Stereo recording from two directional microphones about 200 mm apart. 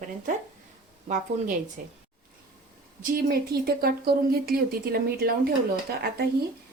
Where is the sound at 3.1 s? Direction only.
50° right (ahead or behind).